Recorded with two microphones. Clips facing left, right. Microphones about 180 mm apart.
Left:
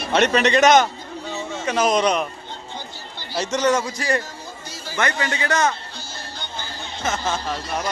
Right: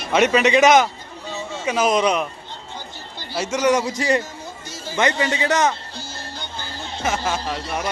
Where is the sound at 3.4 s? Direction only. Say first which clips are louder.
Right 1 dB; 10° right (ahead or behind).